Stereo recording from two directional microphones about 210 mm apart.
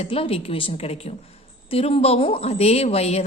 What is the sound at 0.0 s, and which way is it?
A woman's voice, 25° left (ahead or behind).